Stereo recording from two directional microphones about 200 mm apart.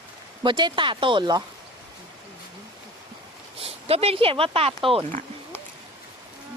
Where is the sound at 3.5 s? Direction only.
30° right (ahead or behind).